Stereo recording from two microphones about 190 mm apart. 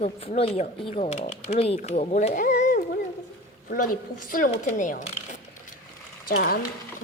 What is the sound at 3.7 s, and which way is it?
A woman's voice, 45° left (ahead or behind).